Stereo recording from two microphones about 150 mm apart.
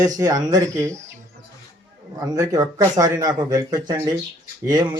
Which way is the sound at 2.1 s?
25° right (ahead or behind).